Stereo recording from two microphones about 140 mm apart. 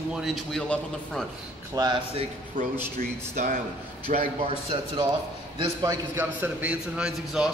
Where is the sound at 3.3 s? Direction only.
65° right (ahead or behind).